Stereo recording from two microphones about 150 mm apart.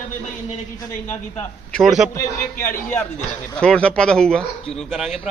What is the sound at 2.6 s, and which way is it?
Speech, 15° left (ahead or behind).